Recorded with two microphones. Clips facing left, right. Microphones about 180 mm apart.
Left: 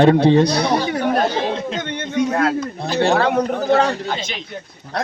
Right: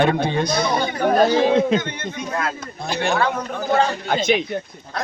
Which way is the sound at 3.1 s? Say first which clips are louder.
Left 4 dB; 70° left (ahead or behind).